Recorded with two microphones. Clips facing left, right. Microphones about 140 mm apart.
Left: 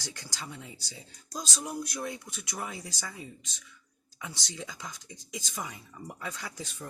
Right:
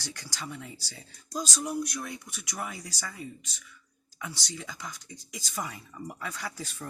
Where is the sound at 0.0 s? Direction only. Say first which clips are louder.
Right 2 dB; 20° left (ahead or behind).